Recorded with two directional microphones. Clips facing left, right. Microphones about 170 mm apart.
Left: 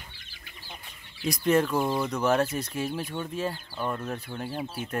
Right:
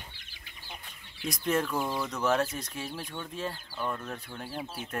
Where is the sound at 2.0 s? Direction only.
20° left (ahead or behind).